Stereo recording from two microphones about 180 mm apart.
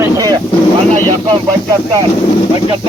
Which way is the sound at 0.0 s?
20° right (ahead or behind).